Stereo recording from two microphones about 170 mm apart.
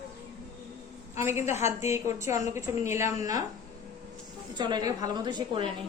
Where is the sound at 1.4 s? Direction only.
40° left (ahead or behind).